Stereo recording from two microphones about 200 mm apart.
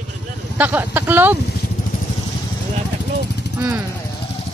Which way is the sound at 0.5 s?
10° right (ahead or behind).